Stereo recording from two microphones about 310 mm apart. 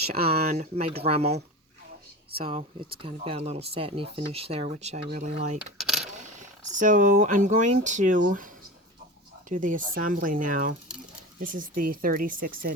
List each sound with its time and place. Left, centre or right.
0.1 s speech: right
2.5 s speech: centre
5.5 s a sound: centre
6.4 s speech: right
9.5 s speech: right